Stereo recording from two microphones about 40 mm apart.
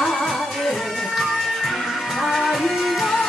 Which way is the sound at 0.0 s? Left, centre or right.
Centre.